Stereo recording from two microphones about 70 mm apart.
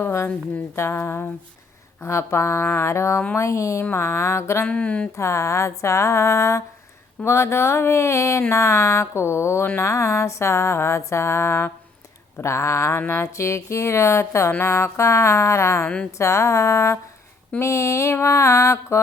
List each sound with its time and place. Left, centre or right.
0.8 s speech: left
2.0 s music: left
4.6 s a sound: left
5.1 s music: left
7.3 s speech: left
8.5 s music: left
13.0 s speech: left
13.2 s music: left